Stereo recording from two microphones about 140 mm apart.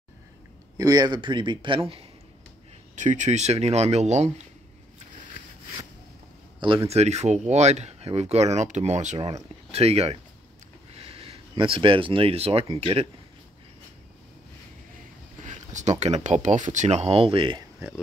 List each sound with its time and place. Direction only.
0.7 s a man's voice: 25° right (ahead or behind); by 2.0 s 40° right (ahead or behind)
3.0 s speech: 60° right (ahead or behind)
6.9 s speech: 50° right (ahead or behind)
15.4 s speech: 60° right (ahead or behind); by 17.6 s 40° right (ahead or behind)